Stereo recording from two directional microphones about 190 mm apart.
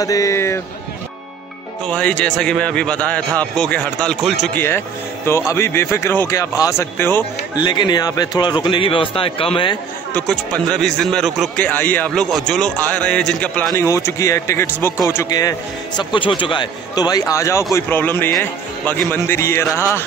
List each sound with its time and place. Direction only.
0.0 s a man's voice: 20° left (ahead or behind)
1.9 s a man's voice: 5° left (ahead or behind)
4.6 s a man's voice: 15° left (ahead or behind)
7.5 s speech: 25° left (ahead or behind)
10.1 s a man's voice: centre (ahead or behind)